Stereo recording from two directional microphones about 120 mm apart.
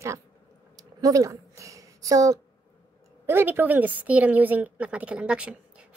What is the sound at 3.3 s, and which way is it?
A woman's voice, 15° right (ahead or behind).